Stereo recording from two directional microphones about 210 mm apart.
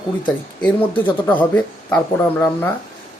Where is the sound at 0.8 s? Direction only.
25° left (ahead or behind).